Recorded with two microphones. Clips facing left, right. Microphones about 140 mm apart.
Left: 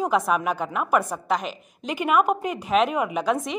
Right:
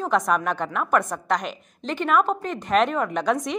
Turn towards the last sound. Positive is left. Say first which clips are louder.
# right 1 dB
turn(degrees=0)  # may be behind; listen again after turning